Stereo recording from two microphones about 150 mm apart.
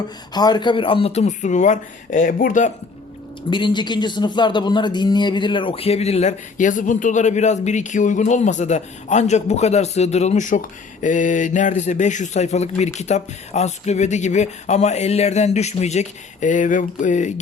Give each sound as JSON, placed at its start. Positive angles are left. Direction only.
{"t": 0.3, "sound": "a man's voice", "side_deg": 30}
{"t": 3.5, "sound": "a man's voice", "side_deg": 30}